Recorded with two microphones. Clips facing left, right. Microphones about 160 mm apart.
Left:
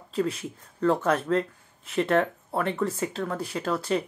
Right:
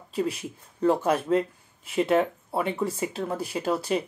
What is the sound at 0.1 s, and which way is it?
Speech, 15° right (ahead or behind).